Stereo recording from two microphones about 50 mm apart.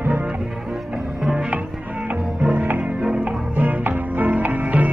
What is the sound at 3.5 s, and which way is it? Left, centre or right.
Music, right.